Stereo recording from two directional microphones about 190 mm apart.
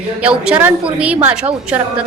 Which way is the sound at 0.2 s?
5° right (ahead or behind).